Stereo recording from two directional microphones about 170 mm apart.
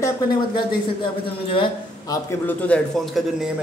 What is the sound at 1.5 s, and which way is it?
Speech, 30° left (ahead or behind).